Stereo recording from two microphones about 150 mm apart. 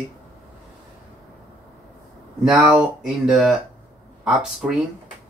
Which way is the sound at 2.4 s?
10° right (ahead or behind).